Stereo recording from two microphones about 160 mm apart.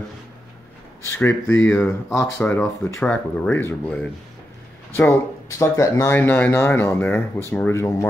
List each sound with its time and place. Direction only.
1.0 s speech: 15° left (ahead or behind)